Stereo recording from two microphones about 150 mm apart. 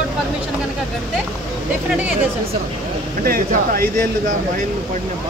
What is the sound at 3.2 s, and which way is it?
Speech, 75° right (ahead or behind).